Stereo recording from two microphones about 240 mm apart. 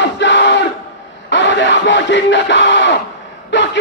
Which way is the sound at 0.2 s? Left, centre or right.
Left.